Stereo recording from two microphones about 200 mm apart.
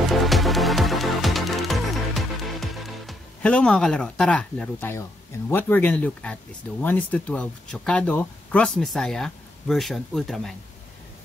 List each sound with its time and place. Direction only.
0.1 s music: centre (ahead or behind)
5.5 s speech: 10° left (ahead or behind)